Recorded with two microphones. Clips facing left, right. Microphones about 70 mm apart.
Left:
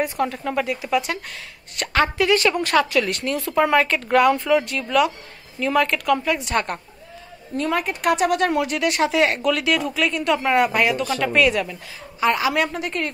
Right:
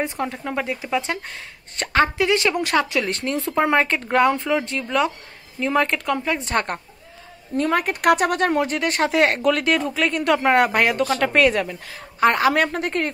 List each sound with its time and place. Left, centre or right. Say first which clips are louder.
0.0 s speech: left 3 dB; right
2.1 s speech: left 1 dB; centre; by 13.1 s right